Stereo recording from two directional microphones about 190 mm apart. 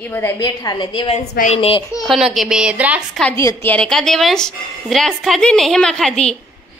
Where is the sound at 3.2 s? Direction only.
15° left (ahead or behind).